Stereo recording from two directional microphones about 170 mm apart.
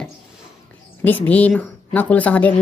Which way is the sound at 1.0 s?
10° left (ahead or behind).